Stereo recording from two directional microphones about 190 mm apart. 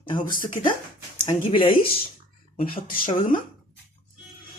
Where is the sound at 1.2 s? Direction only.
25° left (ahead or behind).